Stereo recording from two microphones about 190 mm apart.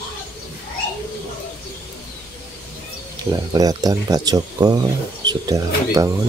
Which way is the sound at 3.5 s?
20° right (ahead or behind).